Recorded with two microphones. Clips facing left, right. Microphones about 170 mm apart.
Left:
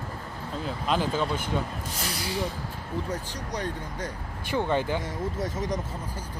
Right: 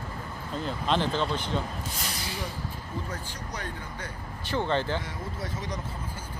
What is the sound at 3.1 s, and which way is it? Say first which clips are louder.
Speech: left 4 dB; 35° left (ahead or behind).